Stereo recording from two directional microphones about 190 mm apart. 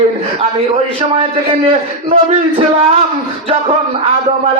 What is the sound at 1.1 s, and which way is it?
A man's voice, 30° right (ahead or behind).